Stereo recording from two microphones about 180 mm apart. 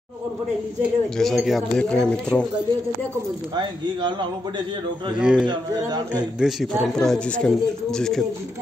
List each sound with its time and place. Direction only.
1.1 s a man's voice: centre (ahead or behind)
3.5 s speech: 25° right (ahead or behind)
5.2 s a man's voice: 5° right (ahead or behind)
5.5 s speech: 20° right (ahead or behind)
6.4 s a man's voice: centre (ahead or behind)